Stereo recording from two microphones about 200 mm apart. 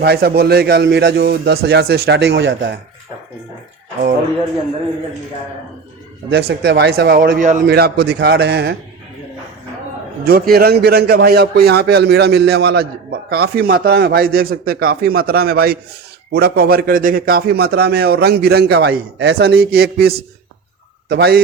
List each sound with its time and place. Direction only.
0.0 s a man's voice: 55° right (ahead or behind)
6.3 s a man's voice: 55° right (ahead or behind)
10.2 s a man's voice: 50° right (ahead or behind)